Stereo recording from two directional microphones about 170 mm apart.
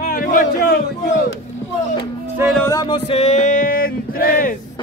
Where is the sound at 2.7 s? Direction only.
30° left (ahead or behind); by 4.5 s 55° left (ahead or behind).